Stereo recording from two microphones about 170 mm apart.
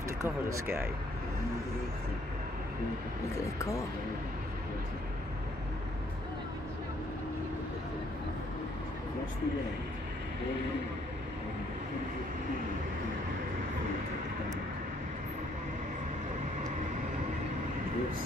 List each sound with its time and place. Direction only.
0.2 s speech: 15° right (ahead or behind)
3.3 s speech: 20° left (ahead or behind)